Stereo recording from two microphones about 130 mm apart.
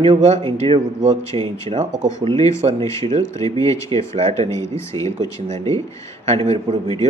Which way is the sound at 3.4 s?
25° left (ahead or behind).